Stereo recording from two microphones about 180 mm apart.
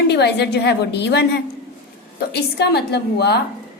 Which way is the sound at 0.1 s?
70° left (ahead or behind).